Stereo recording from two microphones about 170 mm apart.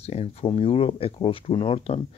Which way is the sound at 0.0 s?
35° left (ahead or behind).